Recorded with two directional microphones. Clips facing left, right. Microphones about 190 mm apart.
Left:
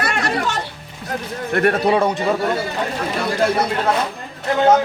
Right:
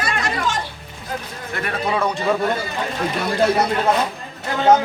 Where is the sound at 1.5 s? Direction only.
55° left (ahead or behind).